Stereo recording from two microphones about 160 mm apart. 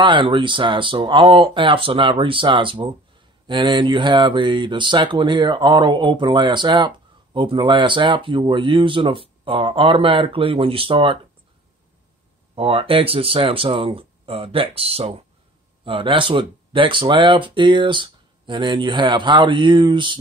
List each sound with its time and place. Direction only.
0.0 s speech: 30° right (ahead or behind)
12.5 s speech: 35° right (ahead or behind)